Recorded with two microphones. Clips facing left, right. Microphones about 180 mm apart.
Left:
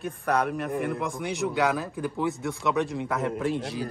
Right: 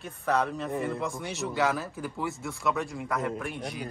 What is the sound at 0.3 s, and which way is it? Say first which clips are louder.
A man's voice: left 1 dB; 15° left (ahead or behind).